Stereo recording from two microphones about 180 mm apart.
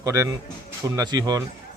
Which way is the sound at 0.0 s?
20° right (ahead or behind).